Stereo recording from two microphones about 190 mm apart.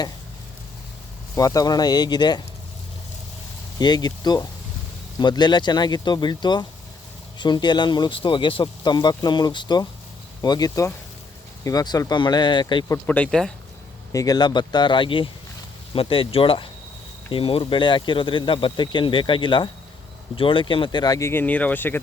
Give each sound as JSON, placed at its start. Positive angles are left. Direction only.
{"t": 1.4, "sound": "speech", "side_deg": 20}
{"t": 3.8, "sound": "speech", "side_deg": 20}
{"t": 13.1, "sound": "speech", "side_deg": 5}
{"t": 14.1, "sound": "speech", "side_deg": 20}